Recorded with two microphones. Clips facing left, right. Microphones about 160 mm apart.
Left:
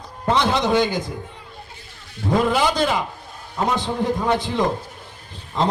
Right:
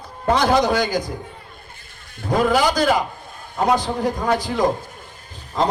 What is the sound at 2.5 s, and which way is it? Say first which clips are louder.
A man's voice: right 2 dB; 25° left (ahead or behind).